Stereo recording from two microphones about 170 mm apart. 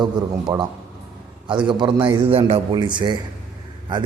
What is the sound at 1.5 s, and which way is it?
A man's voice, 30° right (ahead or behind).